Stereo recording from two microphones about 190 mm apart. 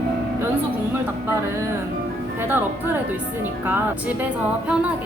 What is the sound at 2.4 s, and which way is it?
Speech, 10° right (ahead or behind).